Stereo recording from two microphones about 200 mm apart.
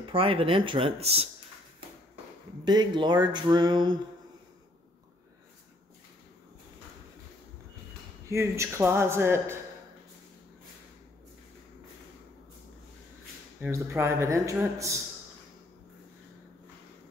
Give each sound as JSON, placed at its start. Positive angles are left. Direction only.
{"t": 0.0, "sound": "speech", "side_deg": -25}
{"t": 2.6, "sound": "speech", "side_deg": -20}
{"t": 8.3, "sound": "speech", "side_deg": -15}
{"t": 13.6, "sound": "speech", "side_deg": -10}